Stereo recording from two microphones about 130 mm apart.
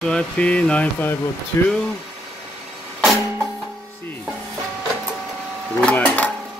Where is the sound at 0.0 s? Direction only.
10° left (ahead or behind).